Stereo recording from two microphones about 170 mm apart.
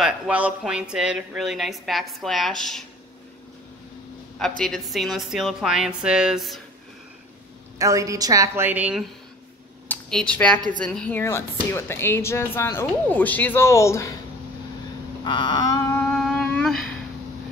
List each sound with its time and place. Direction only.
0.0 s a woman's voice: 5° right (ahead or behind)
4.4 s a woman's voice: 5° left (ahead or behind)
7.8 s a woman's voice: 20° right (ahead or behind)
9.8 s speech: 5° left (ahead or behind)
15.2 s a sound: 25° left (ahead or behind)
16.1 s a sound: centre (ahead or behind)